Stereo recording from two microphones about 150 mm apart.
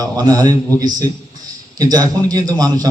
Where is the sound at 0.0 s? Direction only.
25° right (ahead or behind).